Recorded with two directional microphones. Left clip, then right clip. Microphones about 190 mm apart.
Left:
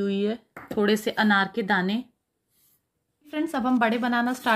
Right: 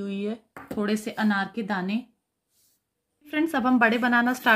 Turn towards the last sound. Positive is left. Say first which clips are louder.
# right 3 dB
turn(degrees=-10)  # may be behind; listen again after turning